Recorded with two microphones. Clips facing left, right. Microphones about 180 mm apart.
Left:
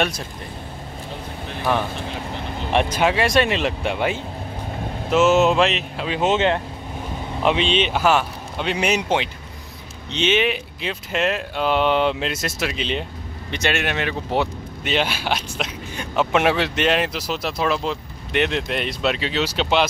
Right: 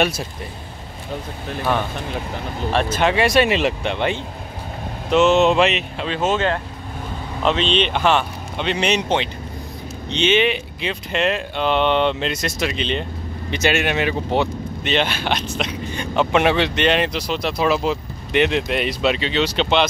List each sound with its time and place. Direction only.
2.7 s speech: 15° left (ahead or behind)
3.0 s speech: centre (ahead or behind)
6.0 s speech: 15° left (ahead or behind)